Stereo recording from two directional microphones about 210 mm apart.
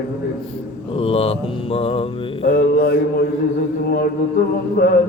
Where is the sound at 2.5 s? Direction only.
50° left (ahead or behind).